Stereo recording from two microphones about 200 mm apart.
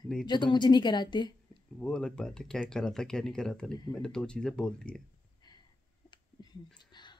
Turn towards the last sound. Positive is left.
turn(degrees=20)  # may be behind; listen again after turning